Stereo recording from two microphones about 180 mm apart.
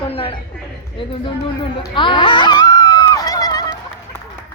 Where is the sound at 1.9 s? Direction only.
25° left (ahead or behind).